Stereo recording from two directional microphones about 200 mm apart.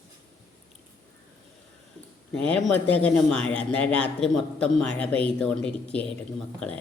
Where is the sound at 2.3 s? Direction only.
5° left (ahead or behind).